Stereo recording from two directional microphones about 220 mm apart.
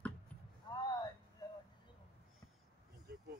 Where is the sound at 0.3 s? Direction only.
5° left (ahead or behind).